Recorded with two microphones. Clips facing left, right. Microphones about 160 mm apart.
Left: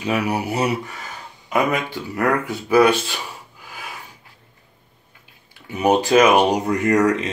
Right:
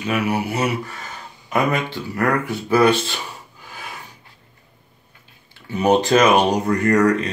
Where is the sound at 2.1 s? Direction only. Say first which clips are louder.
Even; 20° left (ahead or behind).